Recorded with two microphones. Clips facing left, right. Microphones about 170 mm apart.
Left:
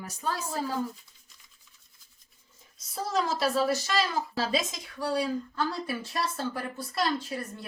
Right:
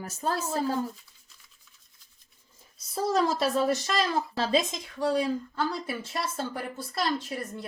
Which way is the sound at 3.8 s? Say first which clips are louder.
Right 1 dB; 30° right (ahead or behind).